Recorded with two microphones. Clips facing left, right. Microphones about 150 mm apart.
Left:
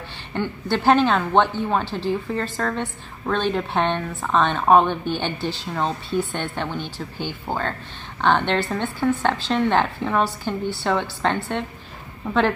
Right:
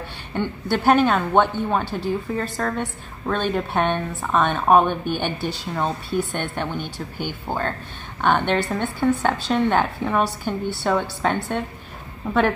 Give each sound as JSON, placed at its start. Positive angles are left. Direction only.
{"t": 0.7, "sound": "a woman's voice", "side_deg": -10}
{"t": 7.5, "sound": "speech", "side_deg": 10}
{"t": 8.2, "sound": "a woman's voice", "side_deg": -10}